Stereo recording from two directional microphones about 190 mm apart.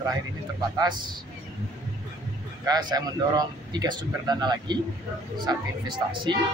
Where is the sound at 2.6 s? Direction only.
20° right (ahead or behind).